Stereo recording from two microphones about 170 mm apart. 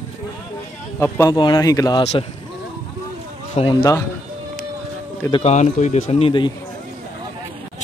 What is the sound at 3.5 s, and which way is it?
Speech, 30° left (ahead or behind).